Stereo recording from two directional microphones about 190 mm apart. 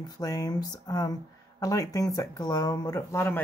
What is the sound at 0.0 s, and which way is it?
Speech, 20° left (ahead or behind).